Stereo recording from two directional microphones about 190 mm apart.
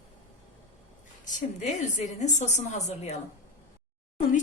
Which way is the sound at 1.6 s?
40° left (ahead or behind).